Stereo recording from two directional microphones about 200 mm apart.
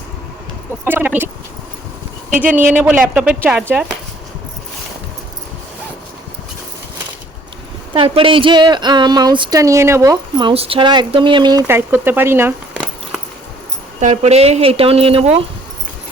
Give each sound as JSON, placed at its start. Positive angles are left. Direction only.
{"t": 0.9, "sound": "speech", "side_deg": -10}
{"t": 2.7, "sound": "speech", "side_deg": -5}
{"t": 7.9, "sound": "speech", "side_deg": -25}
{"t": 11.7, "sound": "speech", "side_deg": -10}
{"t": 14.0, "sound": "speech", "side_deg": -35}